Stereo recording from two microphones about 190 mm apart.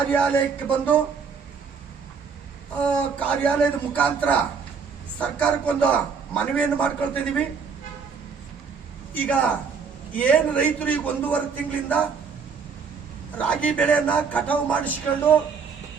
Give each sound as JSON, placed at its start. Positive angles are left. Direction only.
{"t": 0.1, "sound": "a man's voice", "side_deg": 5}
{"t": 2.8, "sound": "a man's voice", "side_deg": 5}
{"t": 9.1, "sound": "a man's voice", "side_deg": 10}
{"t": 13.3, "sound": "a man's voice", "side_deg": 5}